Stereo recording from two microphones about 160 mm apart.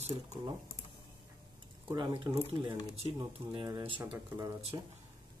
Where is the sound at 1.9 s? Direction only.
30° right (ahead or behind).